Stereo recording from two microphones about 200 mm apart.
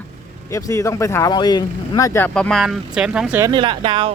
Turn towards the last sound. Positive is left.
turn(degrees=-25)  # may be behind; listen again after turning